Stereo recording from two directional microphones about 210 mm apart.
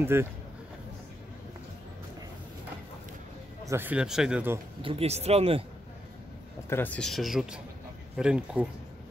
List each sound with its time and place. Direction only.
0.0 s speech: 10° right (ahead or behind)
3.6 s speech: 10° right (ahead or behind)
4.8 s speech: 30° right (ahead or behind)
6.7 s speech: 10° left (ahead or behind)